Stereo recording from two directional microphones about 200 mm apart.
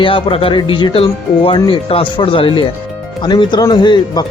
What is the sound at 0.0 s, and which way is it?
Speech, 25° left (ahead or behind).